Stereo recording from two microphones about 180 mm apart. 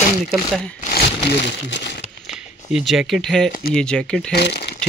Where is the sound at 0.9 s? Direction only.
65° left (ahead or behind).